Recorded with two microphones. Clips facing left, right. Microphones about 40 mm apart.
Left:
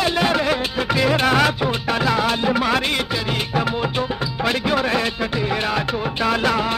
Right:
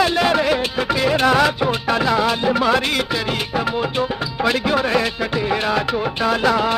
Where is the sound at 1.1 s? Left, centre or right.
Left.